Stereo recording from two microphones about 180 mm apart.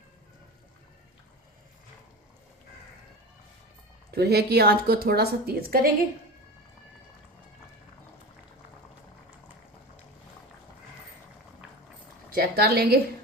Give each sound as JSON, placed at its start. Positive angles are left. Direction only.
{"t": 4.1, "sound": "a woman's voice", "side_deg": -60}
{"t": 12.3, "sound": "a woman's voice", "side_deg": -60}